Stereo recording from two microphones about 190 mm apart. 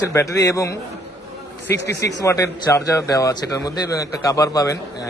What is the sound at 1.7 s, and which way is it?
Speech, 65° left (ahead or behind).